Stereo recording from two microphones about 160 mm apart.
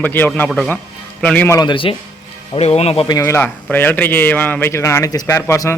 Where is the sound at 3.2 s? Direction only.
15° left (ahead or behind).